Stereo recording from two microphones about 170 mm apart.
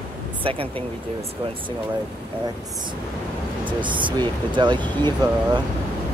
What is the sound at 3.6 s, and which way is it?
Speech, 30° right (ahead or behind).